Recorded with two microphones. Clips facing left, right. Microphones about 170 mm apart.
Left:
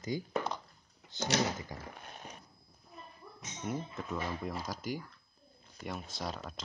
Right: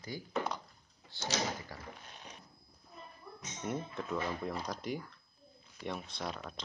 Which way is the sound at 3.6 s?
Centre (ahead or behind).